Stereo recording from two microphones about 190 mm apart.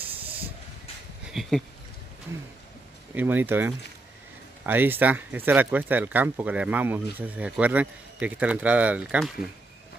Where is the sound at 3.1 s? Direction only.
10° right (ahead or behind).